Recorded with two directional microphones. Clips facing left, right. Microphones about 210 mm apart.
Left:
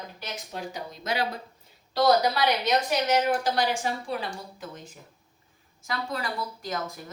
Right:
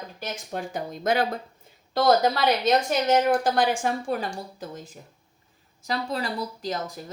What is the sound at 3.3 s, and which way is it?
Speech, 50° right (ahead or behind).